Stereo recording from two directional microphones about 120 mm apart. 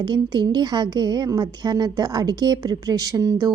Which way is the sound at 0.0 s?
40° right (ahead or behind).